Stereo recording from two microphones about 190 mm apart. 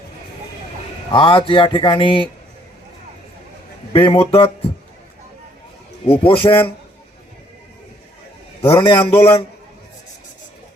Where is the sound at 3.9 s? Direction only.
30° left (ahead or behind).